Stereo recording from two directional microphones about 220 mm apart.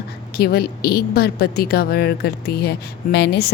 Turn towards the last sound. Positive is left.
turn(degrees=50)  # may be behind; listen again after turning